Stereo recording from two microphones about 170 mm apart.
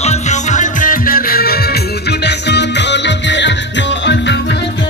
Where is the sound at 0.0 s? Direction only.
40° left (ahead or behind); by 4.6 s 90° left.